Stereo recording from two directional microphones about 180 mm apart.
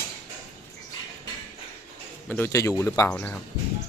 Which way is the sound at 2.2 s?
10° left (ahead or behind).